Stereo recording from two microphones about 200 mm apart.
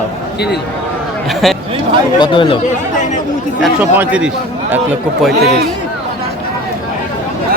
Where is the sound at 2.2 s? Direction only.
25° left (ahead or behind).